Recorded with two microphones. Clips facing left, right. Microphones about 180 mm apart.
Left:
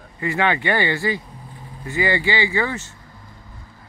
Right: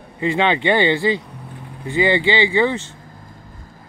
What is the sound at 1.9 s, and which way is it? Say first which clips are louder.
Speech: right 4 dB; 25° right (ahead or behind).